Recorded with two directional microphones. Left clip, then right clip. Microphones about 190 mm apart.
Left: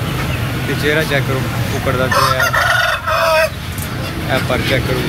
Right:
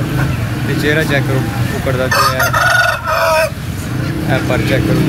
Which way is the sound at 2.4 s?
30° right (ahead or behind).